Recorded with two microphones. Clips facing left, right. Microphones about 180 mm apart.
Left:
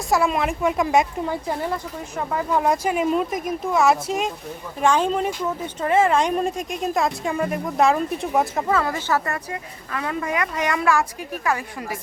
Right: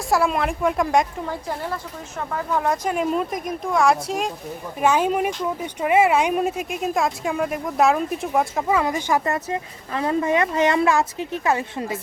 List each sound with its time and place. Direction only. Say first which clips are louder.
0.1 s speech: even; centre (ahead or behind)
8.7 s speech: right 2 dB; 15° right (ahead or behind)